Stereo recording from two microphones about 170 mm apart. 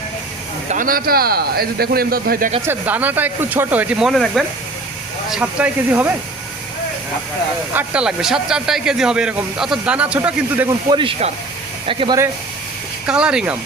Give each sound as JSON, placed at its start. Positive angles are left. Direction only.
{"t": 0.7, "sound": "a man's voice", "side_deg": -55}
{"t": 2.6, "sound": "speech", "side_deg": -10}
{"t": 7.7, "sound": "speech", "side_deg": -10}
{"t": 10.7, "sound": "speech", "side_deg": -25}
{"t": 13.1, "sound": "speech", "side_deg": -5}